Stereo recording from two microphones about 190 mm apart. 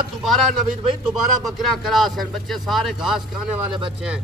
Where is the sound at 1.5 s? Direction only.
Centre (ahead or behind).